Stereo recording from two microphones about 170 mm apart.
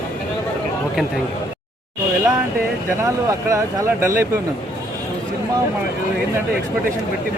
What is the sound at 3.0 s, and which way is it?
Speech, 15° right (ahead or behind).